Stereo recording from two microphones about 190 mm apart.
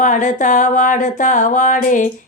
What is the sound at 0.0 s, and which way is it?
Speech, 40° left (ahead or behind).